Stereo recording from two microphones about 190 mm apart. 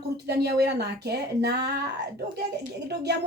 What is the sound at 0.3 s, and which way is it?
Speech, 55° right (ahead or behind).